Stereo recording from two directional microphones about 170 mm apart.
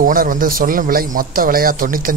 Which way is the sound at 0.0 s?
55° right (ahead or behind).